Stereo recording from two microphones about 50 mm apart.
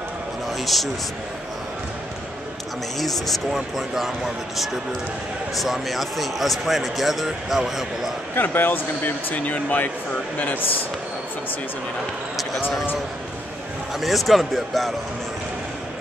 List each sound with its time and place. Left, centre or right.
0.5 s a sound: centre
3.0 s a man's voice: centre
5.6 s a man's voice: centre
8.4 s speech: left
13.9 s a man's voice: centre